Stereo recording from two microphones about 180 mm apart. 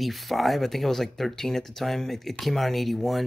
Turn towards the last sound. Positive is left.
turn(degrees=0)  # may be behind; listen again after turning